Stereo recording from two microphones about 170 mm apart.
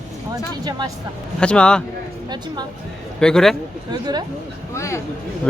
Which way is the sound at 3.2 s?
5° left (ahead or behind).